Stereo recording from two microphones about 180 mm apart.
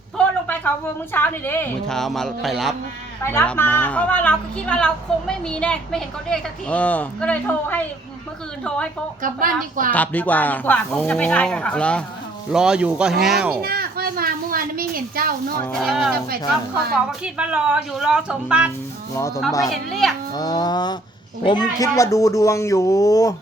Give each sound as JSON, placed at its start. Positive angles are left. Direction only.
{"t": 0.2, "sound": "a sound", "side_deg": 10}
{"t": 1.1, "sound": "a woman's voice", "side_deg": 10}
{"t": 9.2, "sound": "a woman's voice", "side_deg": -50}
{"t": 9.9, "sound": "a woman's voice", "side_deg": 10}
{"t": 13.6, "sound": "a sound", "side_deg": -55}
{"t": 15.8, "sound": "a woman's voice", "side_deg": 0}
{"t": 19.1, "sound": "a woman's voice", "side_deg": 15}
{"t": 20.3, "sound": "a sound", "side_deg": 20}
{"t": 21.4, "sound": "a woman's voice", "side_deg": 25}